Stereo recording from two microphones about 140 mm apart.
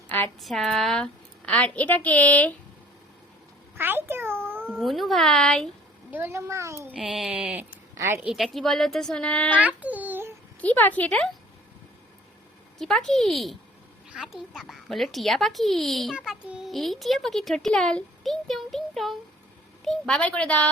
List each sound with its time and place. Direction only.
0.3 s a woman's voice: centre (ahead or behind)
3.8 s speech: 15° right (ahead or behind)
4.6 s a woman's voice: 5° left (ahead or behind)
6.1 s a child's voice: 15° right (ahead or behind)
6.9 s a woman's voice: 5° right (ahead or behind); by 8.2 s 20° right (ahead or behind)
8.2 s a woman's voice: centre (ahead or behind)
9.6 s a sound: 10° right (ahead or behind)
10.6 s a woman's voice: 10° left (ahead or behind)
12.8 s a woman's voice: centre (ahead or behind)